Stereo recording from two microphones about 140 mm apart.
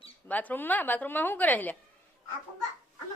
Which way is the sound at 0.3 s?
10° left (ahead or behind).